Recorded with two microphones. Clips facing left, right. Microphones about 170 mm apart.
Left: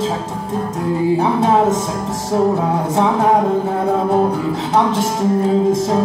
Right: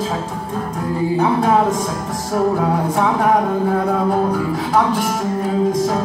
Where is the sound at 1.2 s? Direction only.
25° left (ahead or behind).